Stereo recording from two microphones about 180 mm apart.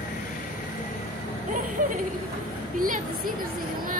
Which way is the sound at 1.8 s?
50° right (ahead or behind).